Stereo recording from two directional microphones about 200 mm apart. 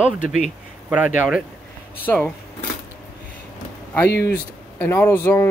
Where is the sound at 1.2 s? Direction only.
5° right (ahead or behind).